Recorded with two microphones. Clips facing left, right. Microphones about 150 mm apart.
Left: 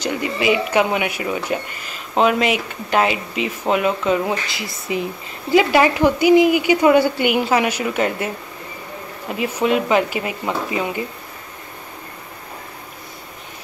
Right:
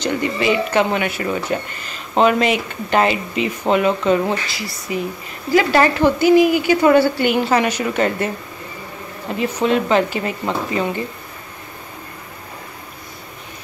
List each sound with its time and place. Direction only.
0.0 s speech: 5° left (ahead or behind)
4.5 s a woman's voice: 20° left (ahead or behind)
9.3 s a woman's voice: 10° left (ahead or behind)